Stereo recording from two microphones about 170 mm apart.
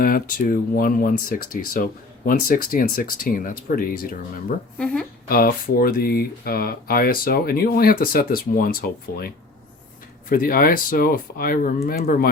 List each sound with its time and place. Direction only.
0.0 s speech: 55° left (ahead or behind)
4.8 s speech: 5° left (ahead or behind)
5.3 s speech: 60° left (ahead or behind)